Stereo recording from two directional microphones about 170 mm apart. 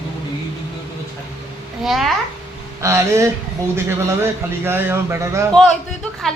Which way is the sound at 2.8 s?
15° right (ahead or behind).